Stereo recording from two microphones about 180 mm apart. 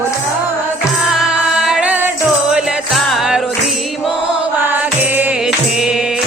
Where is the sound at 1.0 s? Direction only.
5° right (ahead or behind).